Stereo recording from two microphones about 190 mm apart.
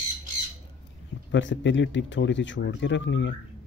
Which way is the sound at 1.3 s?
75° left (ahead or behind).